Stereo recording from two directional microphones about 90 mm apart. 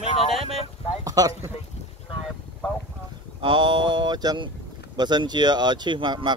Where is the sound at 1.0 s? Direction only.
45° right (ahead or behind).